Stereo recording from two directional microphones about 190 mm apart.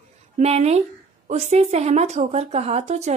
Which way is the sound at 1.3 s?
35° right (ahead or behind).